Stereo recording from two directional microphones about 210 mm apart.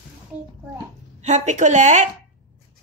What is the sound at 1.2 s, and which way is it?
Speech, 35° right (ahead or behind).